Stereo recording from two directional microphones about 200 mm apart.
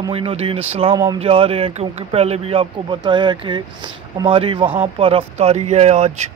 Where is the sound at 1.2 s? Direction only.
30° right (ahead or behind).